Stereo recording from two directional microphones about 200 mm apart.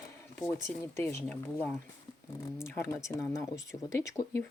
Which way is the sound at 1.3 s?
10° left (ahead or behind).